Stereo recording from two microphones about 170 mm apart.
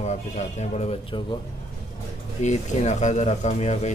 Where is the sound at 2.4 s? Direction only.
45° left (ahead or behind).